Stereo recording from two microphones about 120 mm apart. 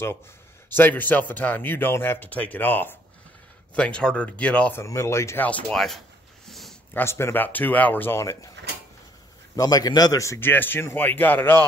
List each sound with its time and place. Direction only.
0.7 s speech: 15° left (ahead or behind)
4.8 s speech: 25° left (ahead or behind); by 5.9 s 5° left (ahead or behind)
6.9 s speech: 20° left (ahead or behind)
9.6 s speech: 30° left (ahead or behind); by 11.6 s 15° left (ahead or behind)